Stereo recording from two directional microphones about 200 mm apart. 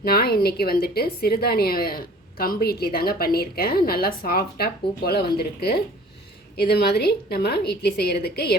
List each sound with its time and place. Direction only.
0.0 s a woman's voice: 50° left (ahead or behind)